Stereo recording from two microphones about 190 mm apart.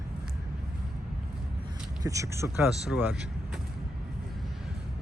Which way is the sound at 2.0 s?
15° right (ahead or behind).